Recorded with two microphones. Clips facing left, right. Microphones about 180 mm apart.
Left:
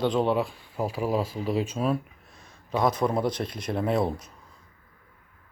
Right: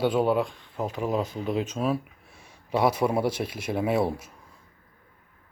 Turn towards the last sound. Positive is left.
turn(degrees=-5)  # may be behind; listen again after turning